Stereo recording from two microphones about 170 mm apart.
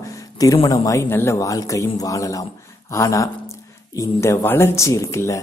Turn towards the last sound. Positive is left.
turn(degrees=15)  # may be behind; listen again after turning